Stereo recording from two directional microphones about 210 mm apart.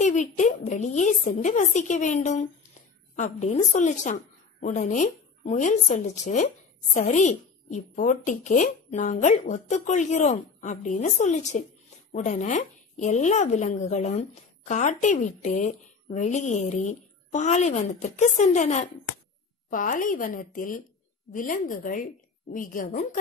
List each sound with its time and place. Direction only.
0.0 s a woman's voice: 35° left (ahead or behind)